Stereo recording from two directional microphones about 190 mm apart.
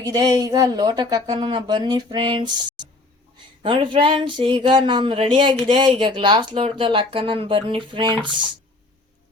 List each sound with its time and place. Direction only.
0.0 s speech: 20° right (ahead or behind)